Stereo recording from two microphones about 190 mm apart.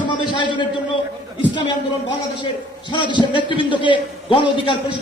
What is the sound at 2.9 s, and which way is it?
A man's voice, 25° left (ahead or behind).